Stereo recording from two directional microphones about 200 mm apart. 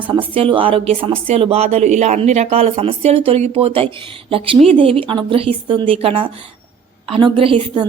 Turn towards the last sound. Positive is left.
turn(degrees=-25)  # may be behind; listen again after turning